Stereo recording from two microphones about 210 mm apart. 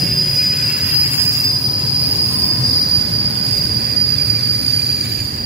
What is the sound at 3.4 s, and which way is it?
Train, 45° right (ahead or behind).